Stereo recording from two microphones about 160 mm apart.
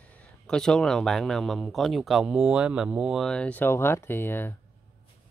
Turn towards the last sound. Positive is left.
turn(degrees=15)  # may be behind; listen again after turning